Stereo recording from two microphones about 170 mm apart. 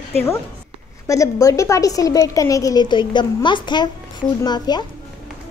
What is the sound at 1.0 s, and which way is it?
A woman's voice, 20° left (ahead or behind).